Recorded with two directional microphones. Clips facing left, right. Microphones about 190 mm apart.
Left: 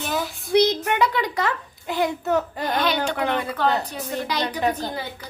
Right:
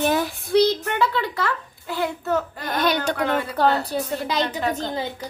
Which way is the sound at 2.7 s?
45° right (ahead or behind).